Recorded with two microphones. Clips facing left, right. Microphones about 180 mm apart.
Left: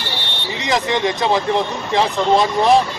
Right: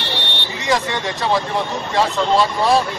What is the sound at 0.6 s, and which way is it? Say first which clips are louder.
Speech: left 2 dB; 20° left (ahead or behind).